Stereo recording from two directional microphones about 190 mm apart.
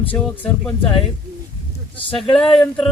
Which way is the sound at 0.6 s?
5° left (ahead or behind).